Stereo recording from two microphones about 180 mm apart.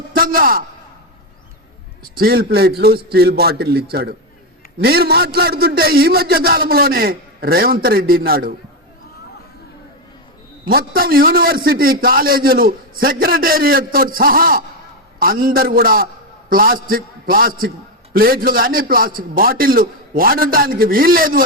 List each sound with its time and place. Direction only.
0.2 s a man's voice: 55° right (ahead or behind)
2.1 s a man's voice: 60° right (ahead or behind)
10.7 s a man's voice: 55° right (ahead or behind)